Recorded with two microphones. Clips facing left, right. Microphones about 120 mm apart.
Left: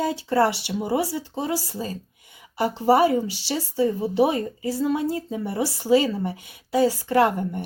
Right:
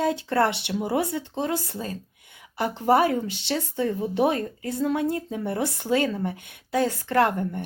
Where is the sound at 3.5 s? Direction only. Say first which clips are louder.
Left 2 dB; 5° left (ahead or behind).